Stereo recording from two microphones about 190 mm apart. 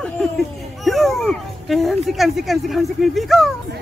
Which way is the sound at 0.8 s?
Centre (ahead or behind).